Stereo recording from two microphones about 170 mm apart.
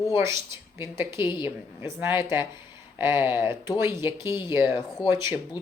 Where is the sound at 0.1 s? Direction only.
15° right (ahead or behind).